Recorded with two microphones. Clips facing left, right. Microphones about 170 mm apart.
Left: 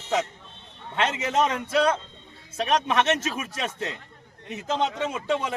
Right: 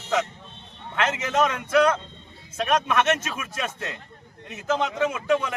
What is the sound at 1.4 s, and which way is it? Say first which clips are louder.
Speech: right 2 dB; 30° left (ahead or behind).